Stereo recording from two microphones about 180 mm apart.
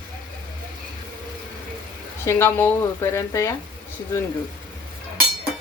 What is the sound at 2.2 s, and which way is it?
Speech, 15° left (ahead or behind).